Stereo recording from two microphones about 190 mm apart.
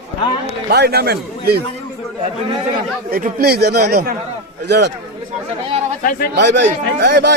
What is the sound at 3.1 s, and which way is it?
Speech, 55° right (ahead or behind).